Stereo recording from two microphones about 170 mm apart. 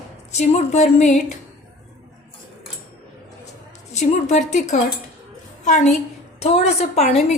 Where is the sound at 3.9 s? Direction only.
40° left (ahead or behind).